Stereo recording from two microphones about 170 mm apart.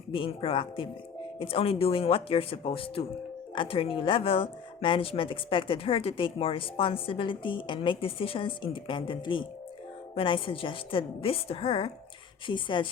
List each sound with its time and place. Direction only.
0.1 s speech: 30° left (ahead or behind)